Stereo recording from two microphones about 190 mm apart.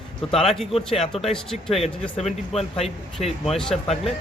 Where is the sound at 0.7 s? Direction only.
30° left (ahead or behind).